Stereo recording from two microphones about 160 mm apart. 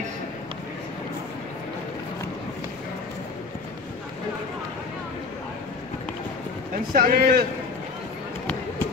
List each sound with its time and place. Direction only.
6.9 s speech: 65° right (ahead or behind)